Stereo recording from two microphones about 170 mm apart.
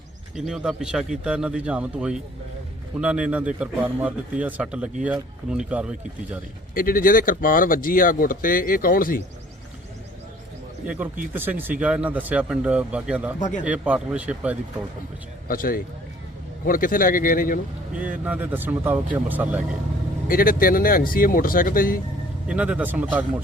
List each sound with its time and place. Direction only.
0.3 s speech: 5° right (ahead or behind)
6.7 s speech: 55° left (ahead or behind)
10.8 s speech: 10° right (ahead or behind)
15.4 s speech: 55° left (ahead or behind)
17.9 s speech: 10° right (ahead or behind)
20.2 s speech: 55° left (ahead or behind)
22.4 s speech: 5° right (ahead or behind)